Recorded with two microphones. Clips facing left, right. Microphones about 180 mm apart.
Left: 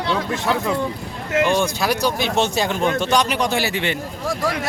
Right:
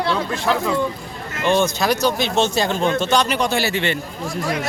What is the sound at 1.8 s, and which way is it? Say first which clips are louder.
Speech: right 2 dB; 10° left (ahead or behind).